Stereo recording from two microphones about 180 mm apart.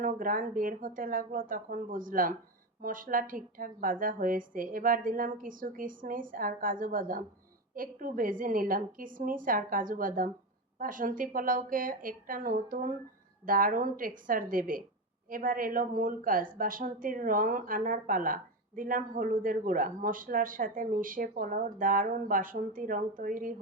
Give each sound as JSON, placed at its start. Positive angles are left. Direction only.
{"t": 0.0, "sound": "a man's voice", "side_deg": -50}